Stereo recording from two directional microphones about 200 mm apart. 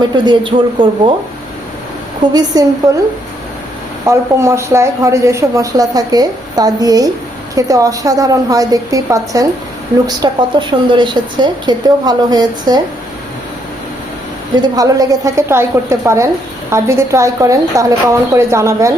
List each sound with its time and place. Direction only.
0.3 s a woman's voice: 25° right (ahead or behind)
2.3 s a woman's voice: 20° right (ahead or behind)
4.0 s a woman's voice: 15° right (ahead or behind)
14.5 s a woman's voice: 20° right (ahead or behind)